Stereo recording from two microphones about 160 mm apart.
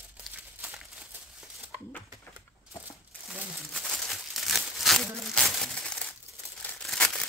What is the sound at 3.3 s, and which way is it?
Crumpling, centre (ahead or behind).